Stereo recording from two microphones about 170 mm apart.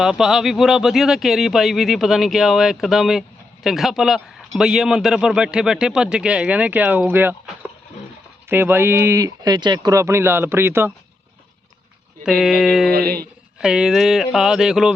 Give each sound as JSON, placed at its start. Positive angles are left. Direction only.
{"t": 0.0, "sound": "a man's voice", "side_deg": -5}
{"t": 8.4, "sound": "speech", "side_deg": -10}
{"t": 12.2, "sound": "a man's voice", "side_deg": 0}
{"t": 12.9, "sound": "speech", "side_deg": -65}
{"t": 13.6, "sound": "a man's voice", "side_deg": -5}